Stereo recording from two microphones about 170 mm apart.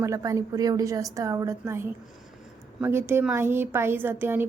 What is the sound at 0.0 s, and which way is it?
A woman's voice, 20° right (ahead or behind).